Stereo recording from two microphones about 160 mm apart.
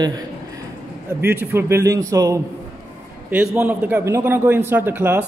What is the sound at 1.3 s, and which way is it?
A man's voice, 15° right (ahead or behind).